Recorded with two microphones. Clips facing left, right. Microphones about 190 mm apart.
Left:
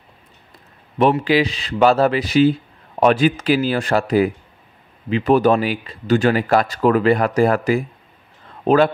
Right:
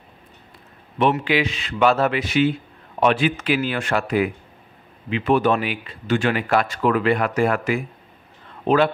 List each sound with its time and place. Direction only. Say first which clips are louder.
1.1 s a man's voice: left 4 dB; 35° left (ahead or behind)